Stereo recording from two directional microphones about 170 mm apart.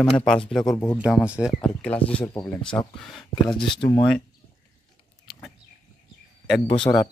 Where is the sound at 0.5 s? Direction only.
5° left (ahead or behind).